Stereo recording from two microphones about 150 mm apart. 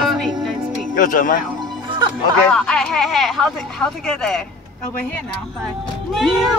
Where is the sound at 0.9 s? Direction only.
65° left (ahead or behind).